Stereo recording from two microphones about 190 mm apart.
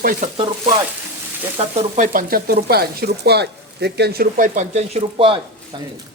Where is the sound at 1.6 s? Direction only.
35° right (ahead or behind).